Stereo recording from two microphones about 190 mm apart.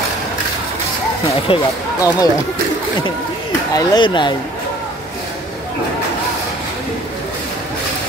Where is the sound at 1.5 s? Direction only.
30° left (ahead or behind).